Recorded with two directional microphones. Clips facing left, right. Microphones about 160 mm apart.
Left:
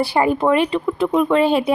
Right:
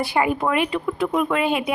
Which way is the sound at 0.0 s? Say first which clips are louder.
Left 4 dB; 30° left (ahead or behind).